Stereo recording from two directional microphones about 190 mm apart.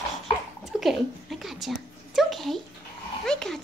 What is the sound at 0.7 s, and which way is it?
Dog, centre (ahead or behind).